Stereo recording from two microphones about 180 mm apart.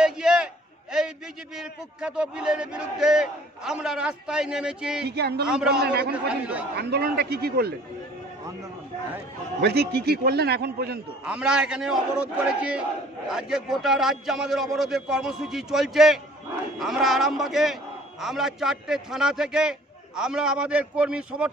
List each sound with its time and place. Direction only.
0.0 s a sound: 5° right (ahead or behind)
1.6 s speech: 5° right (ahead or behind)
5.0 s a man's voice: 65° right (ahead or behind)
5.5 s speech: 5° right (ahead or behind)
5.9 s a man's voice: 65° right (ahead or behind)
6.1 s a man's voice: 5° right (ahead or behind)
6.8 s a man's voice: 60° right (ahead or behind)
9.6 s a man's voice: 65° right (ahead or behind)
11.2 s a man's voice: 5° right (ahead or behind)